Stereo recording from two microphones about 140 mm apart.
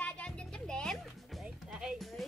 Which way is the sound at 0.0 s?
5° left (ahead or behind).